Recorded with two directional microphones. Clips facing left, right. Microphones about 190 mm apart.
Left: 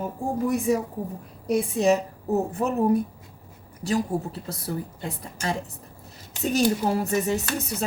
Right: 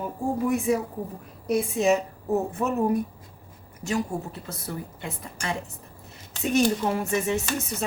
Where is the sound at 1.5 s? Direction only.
35° left (ahead or behind).